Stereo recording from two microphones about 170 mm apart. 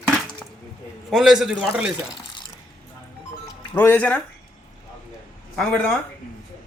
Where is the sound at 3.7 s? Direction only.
10° left (ahead or behind).